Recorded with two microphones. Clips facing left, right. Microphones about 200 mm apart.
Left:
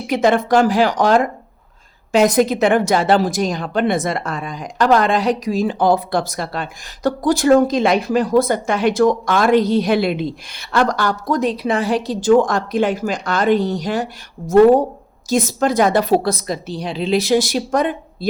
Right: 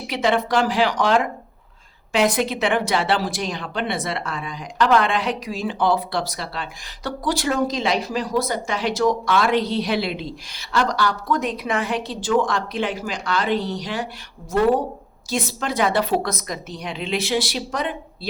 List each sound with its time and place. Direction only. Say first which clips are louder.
0.1 s a woman's voice: left 6 dB; 45° left (ahead or behind)